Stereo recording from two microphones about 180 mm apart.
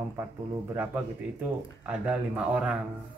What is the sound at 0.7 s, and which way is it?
Speech, 10° right (ahead or behind).